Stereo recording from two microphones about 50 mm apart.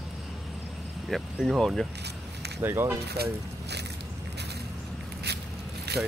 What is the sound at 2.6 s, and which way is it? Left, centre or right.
Speech, right.